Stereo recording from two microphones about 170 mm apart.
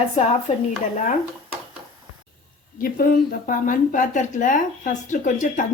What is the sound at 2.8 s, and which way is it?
Speech, 55° left (ahead or behind).